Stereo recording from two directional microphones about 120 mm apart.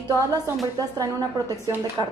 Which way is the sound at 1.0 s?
30° right (ahead or behind).